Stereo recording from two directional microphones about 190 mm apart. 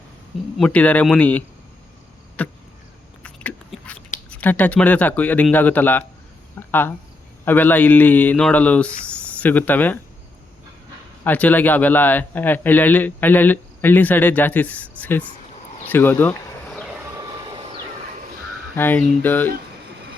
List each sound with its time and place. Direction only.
0.6 s a man's voice: 5° left (ahead or behind)
3.2 s biting: 5° left (ahead or behind)
4.3 s a man's voice: 10° left (ahead or behind)
11.2 s a man's voice: 10° left (ahead or behind)
15.8 s a sound: 10° left (ahead or behind)
17.2 s vehicle: 25° right (ahead or behind)
18.8 s a man's voice: 10° left (ahead or behind)